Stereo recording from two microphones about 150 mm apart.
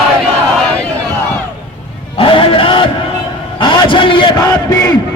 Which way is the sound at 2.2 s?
35° left (ahead or behind).